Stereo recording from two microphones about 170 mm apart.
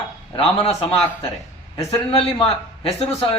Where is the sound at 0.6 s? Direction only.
35° left (ahead or behind).